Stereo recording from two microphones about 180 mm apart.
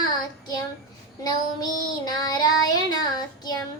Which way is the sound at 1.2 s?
20° left (ahead or behind).